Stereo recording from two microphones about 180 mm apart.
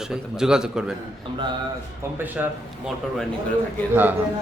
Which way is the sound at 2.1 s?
10° right (ahead or behind).